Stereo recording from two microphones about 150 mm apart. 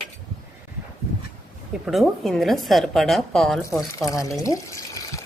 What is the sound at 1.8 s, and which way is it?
A woman's voice, centre (ahead or behind).